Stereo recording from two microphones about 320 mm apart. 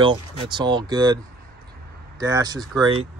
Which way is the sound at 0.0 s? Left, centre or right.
Centre.